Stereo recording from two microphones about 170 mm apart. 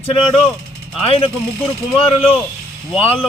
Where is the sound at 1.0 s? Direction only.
30° left (ahead or behind).